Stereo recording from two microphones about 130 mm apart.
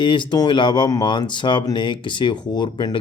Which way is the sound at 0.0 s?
40° left (ahead or behind).